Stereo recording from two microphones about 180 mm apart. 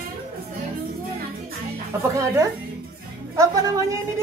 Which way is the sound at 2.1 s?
15° right (ahead or behind).